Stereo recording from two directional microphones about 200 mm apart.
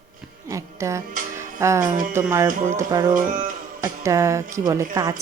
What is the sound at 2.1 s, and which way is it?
Speech, 15° right (ahead or behind).